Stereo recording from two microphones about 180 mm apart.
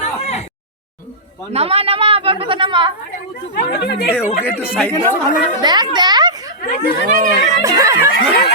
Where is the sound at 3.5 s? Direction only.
60° left (ahead or behind).